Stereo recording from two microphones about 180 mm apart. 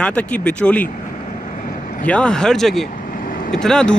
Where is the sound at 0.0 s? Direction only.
5° left (ahead or behind).